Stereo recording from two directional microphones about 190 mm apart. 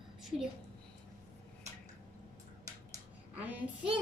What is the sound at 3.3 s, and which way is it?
Speech, 10° right (ahead or behind).